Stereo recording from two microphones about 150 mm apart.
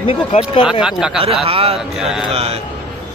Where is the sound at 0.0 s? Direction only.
40° left (ahead or behind).